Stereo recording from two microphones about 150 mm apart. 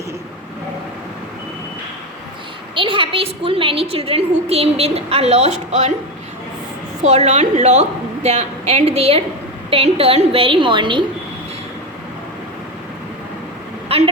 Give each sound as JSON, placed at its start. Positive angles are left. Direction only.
{"t": 2.7, "sound": "a woman's voice", "side_deg": -35}
{"t": 7.0, "sound": "a woman's voice", "side_deg": -45}
{"t": 13.8, "sound": "vehicle", "side_deg": -40}